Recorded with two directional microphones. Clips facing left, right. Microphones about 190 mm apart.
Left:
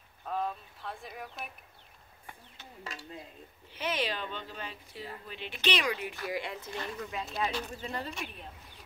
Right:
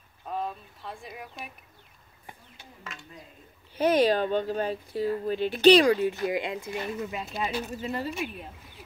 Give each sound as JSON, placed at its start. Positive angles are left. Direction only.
{"t": 0.8, "sound": "a woman's voice", "side_deg": 0}
{"t": 2.8, "sound": "speech", "side_deg": 35}
{"t": 3.7, "sound": "speech", "side_deg": -40}